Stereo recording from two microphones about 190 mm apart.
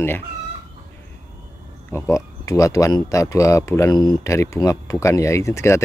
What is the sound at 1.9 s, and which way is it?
Speech, 15° left (ahead or behind).